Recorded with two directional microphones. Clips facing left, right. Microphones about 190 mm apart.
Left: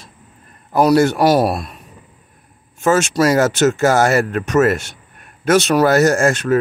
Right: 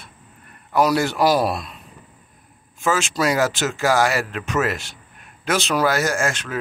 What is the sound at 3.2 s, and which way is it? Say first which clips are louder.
Speech: left 6 dB; 45° left (ahead or behind).